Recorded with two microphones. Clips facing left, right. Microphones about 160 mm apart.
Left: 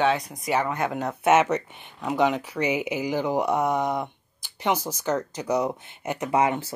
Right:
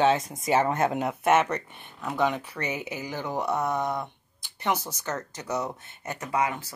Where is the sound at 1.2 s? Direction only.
5° left (ahead or behind).